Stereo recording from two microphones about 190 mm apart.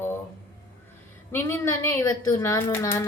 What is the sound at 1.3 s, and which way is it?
A woman's voice, 15° left (ahead or behind).